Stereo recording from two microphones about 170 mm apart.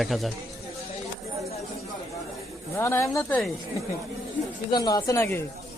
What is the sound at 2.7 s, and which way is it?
Speech, 15° left (ahead or behind).